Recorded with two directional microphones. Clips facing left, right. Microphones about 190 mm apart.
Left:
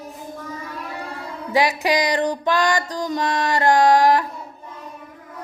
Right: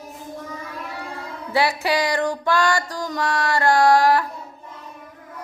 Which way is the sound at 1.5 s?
15° left (ahead or behind).